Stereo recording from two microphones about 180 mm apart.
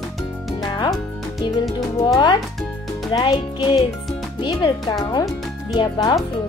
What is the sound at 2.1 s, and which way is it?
Speech, 25° left (ahead or behind).